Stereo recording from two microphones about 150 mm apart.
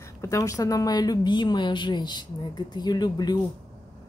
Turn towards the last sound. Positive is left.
turn(degrees=30)  # may be behind; listen again after turning